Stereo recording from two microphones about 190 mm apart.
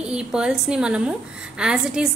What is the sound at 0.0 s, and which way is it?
A woman's voice, 5° right (ahead or behind).